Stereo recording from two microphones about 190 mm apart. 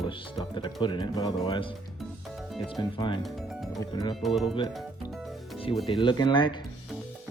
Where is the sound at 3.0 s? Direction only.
25° left (ahead or behind).